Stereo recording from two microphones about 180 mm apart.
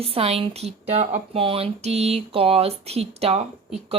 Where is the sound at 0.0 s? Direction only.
30° right (ahead or behind).